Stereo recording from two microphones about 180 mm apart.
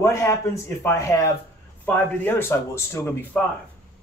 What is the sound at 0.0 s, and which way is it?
Speech, 15° left (ahead or behind).